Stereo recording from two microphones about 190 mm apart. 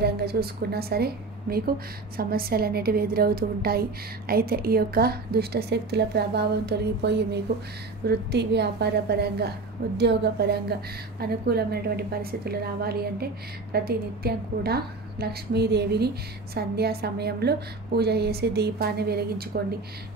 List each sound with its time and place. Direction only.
0.0 s a woman's voice: 55° right (ahead or behind)